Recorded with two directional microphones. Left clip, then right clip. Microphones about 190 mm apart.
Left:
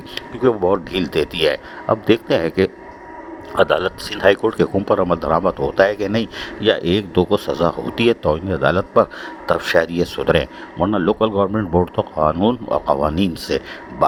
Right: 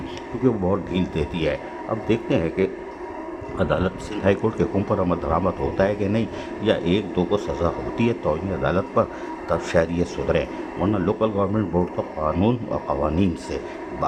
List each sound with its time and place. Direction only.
0.4 s speech: 30° left (ahead or behind)